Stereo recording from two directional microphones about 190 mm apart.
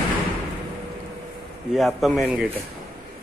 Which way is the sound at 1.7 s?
Centre (ahead or behind).